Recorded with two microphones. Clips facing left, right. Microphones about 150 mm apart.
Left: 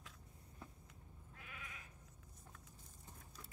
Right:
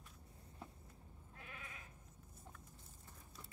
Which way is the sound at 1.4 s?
30° right (ahead or behind).